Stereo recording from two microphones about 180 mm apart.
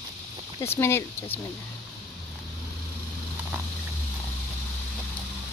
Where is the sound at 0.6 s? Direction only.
15° left (ahead or behind).